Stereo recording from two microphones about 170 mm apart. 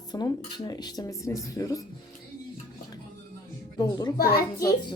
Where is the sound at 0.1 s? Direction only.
25° left (ahead or behind).